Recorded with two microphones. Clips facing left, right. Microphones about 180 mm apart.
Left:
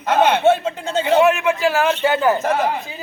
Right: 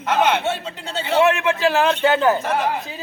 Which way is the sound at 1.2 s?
Centre (ahead or behind).